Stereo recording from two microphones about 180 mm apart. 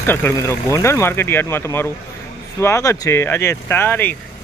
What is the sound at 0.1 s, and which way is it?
Speech, 10° left (ahead or behind).